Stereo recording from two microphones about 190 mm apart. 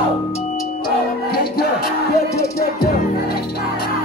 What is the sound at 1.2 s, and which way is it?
Music, 55° left (ahead or behind).